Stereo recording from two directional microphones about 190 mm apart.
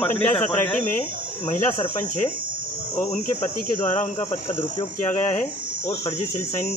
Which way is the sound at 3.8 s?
40° left (ahead or behind).